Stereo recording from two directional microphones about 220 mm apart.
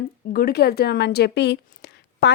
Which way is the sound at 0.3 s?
45° left (ahead or behind).